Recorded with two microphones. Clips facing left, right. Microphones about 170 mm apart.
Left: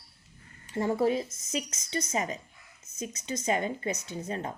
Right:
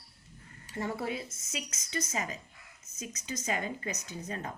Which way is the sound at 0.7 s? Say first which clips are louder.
Left 8 dB; 30° left (ahead or behind).